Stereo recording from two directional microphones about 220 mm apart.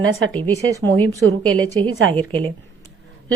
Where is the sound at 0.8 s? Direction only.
10° left (ahead or behind).